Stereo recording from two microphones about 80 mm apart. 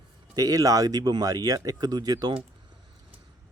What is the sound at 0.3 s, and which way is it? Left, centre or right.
Speech, right.